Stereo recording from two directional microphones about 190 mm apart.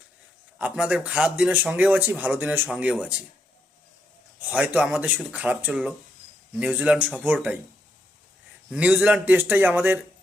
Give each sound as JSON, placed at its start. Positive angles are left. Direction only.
{"t": 0.6, "sound": "a man's voice", "side_deg": -5}
{"t": 4.4, "sound": "a man's voice", "side_deg": -5}
{"t": 8.7, "sound": "a man's voice", "side_deg": -5}